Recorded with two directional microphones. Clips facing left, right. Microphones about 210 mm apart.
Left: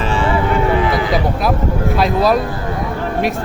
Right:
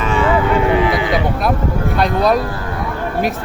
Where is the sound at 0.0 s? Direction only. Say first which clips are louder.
Right 1 dB; 30° left (ahead or behind).